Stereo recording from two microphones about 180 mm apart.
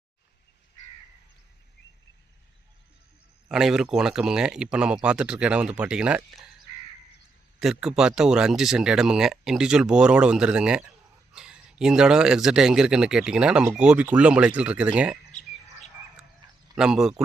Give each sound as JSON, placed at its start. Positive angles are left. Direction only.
{"t": 3.5, "sound": "speech", "side_deg": -5}
{"t": 7.6, "sound": "speech", "side_deg": -5}
{"t": 15.3, "sound": "bird", "side_deg": 40}
{"t": 16.7, "sound": "speech", "side_deg": -5}